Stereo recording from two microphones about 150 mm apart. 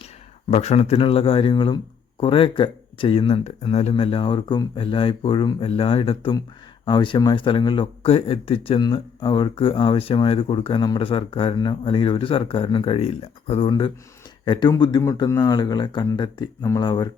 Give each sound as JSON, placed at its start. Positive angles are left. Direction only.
{"t": 0.5, "sound": "a man's voice", "side_deg": 45}